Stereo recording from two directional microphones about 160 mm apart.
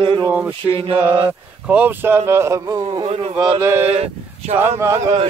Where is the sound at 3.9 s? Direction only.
40° right (ahead or behind).